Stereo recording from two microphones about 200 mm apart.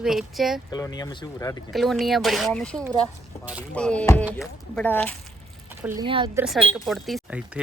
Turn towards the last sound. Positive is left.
turn(degrees=0)  # may be behind; listen again after turning